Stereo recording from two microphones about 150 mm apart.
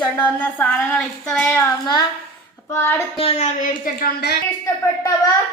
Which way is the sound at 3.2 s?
40° left (ahead or behind).